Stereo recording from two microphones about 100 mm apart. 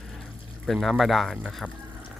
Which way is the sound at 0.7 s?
Centre (ahead or behind).